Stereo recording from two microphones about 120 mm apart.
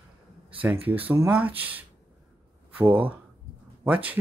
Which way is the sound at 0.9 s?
15° right (ahead or behind).